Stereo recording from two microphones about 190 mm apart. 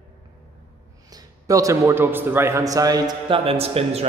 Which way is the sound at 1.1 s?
20° right (ahead or behind).